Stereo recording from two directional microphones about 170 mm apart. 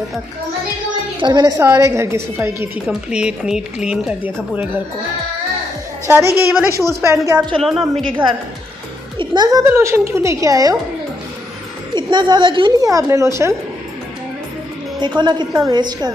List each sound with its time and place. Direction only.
1.2 s a woman's voice: 25° right (ahead or behind); by 4.6 s 10° right (ahead or behind)
6.0 s a woman's voice: 15° right (ahead or behind)
7.6 s speech: centre (ahead or behind)
9.2 s a woman's voice: 25° right (ahead or behind)
11.9 s a woman's voice: 25° right (ahead or behind)
15.0 s a woman's voice: 25° right (ahead or behind)